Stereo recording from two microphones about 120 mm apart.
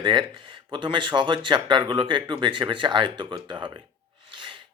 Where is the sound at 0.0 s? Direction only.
45° right (ahead or behind).